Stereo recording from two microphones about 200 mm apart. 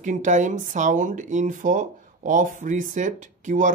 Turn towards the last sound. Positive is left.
turn(degrees=-40)  # may be behind; listen again after turning